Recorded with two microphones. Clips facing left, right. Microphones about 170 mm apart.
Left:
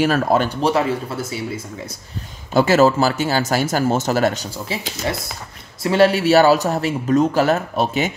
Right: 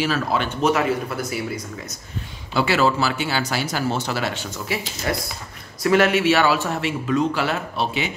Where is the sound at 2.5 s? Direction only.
45° left (ahead or behind).